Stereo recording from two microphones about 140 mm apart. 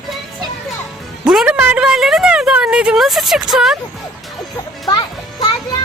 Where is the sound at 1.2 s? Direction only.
5° right (ahead or behind).